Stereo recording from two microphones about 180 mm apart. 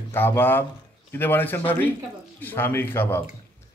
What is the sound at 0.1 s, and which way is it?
A man's voice, 10° left (ahead or behind).